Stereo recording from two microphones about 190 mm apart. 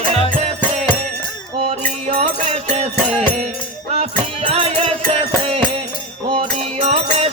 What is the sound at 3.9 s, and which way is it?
Music, 35° right (ahead or behind).